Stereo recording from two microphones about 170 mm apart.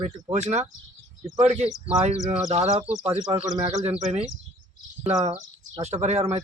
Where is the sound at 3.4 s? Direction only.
25° right (ahead or behind).